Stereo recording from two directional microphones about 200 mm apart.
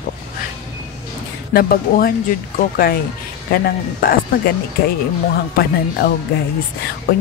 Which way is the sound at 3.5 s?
50° left (ahead or behind).